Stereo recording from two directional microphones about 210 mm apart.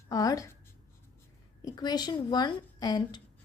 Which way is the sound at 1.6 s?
20° left (ahead or behind).